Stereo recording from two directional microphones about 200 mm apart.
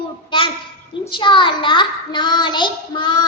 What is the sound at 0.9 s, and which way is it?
A child's voice, 25° left (ahead or behind).